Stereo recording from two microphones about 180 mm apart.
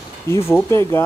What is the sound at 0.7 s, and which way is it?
Speech, 15° left (ahead or behind).